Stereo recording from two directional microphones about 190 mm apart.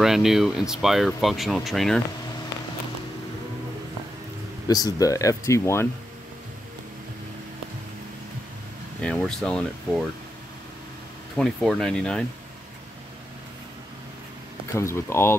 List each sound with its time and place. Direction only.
0.0 s speech: centre (ahead or behind)
4.6 s speech: 20° left (ahead or behind)
9.0 s speech: centre (ahead or behind)
11.3 s speech: 5° left (ahead or behind)
14.7 s speech: 15° left (ahead or behind)